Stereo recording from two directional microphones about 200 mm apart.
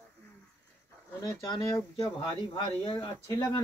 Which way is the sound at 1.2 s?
20° left (ahead or behind).